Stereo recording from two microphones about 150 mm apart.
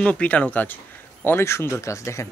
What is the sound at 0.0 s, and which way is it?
Speech, 10° left (ahead or behind).